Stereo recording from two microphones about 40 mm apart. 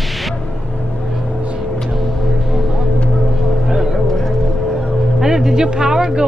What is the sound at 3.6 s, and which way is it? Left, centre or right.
Vehicle, centre.